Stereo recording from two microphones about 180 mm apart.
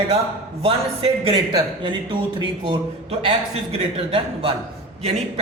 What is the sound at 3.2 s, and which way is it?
Speech, 35° right (ahead or behind).